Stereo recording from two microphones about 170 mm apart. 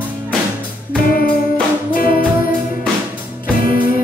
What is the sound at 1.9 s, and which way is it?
Music, 55° left (ahead or behind).